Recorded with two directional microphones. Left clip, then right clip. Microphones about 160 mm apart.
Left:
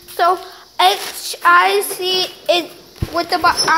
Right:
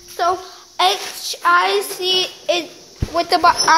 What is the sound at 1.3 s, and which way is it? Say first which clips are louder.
Speech: left 3 dB; 5° left (ahead or behind).